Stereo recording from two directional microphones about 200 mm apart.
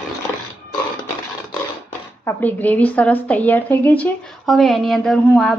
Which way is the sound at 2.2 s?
10° left (ahead or behind).